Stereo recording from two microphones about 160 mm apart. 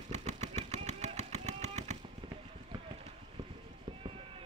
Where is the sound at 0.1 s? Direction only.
45° right (ahead or behind).